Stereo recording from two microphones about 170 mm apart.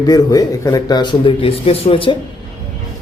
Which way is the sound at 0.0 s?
20° left (ahead or behind).